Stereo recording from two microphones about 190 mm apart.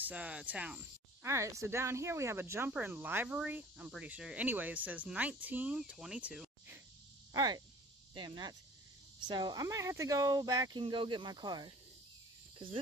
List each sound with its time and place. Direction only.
0.1 s speech: 5° right (ahead or behind)
7.3 s speech: 20° right (ahead or behind)